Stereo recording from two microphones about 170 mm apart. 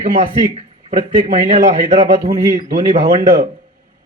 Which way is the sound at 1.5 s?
50° right (ahead or behind).